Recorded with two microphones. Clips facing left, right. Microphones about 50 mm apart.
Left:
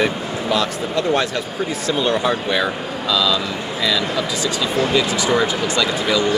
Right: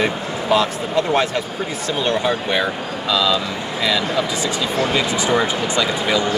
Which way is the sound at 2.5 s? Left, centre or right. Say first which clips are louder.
Even; centre.